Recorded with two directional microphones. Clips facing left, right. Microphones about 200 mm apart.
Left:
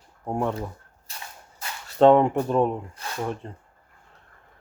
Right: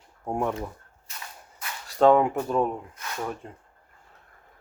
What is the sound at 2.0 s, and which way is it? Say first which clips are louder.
Speech: left 2 dB; 5° right (ahead or behind).